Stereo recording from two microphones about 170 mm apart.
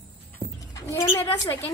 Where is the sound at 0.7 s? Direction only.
20° left (ahead or behind).